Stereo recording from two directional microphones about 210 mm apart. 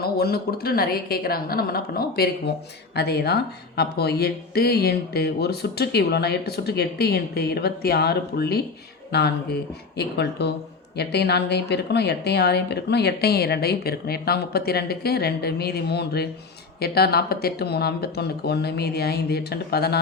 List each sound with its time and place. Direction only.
0.0 s speech: 45° left (ahead or behind)